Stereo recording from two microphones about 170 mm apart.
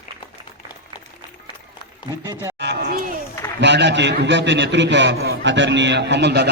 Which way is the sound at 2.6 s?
80° right.